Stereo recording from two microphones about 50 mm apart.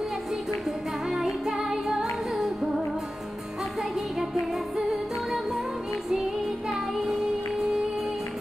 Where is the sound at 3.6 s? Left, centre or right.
Centre.